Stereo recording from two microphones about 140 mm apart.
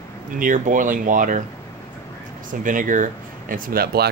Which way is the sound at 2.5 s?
70° right (ahead or behind).